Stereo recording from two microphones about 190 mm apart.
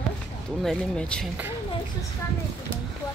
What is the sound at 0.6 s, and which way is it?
Speech, 5° left (ahead or behind).